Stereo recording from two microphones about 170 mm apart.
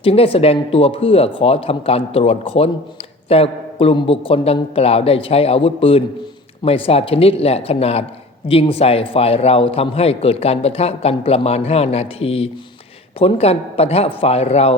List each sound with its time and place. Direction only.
0.0 s a man's voice: 35° left (ahead or behind)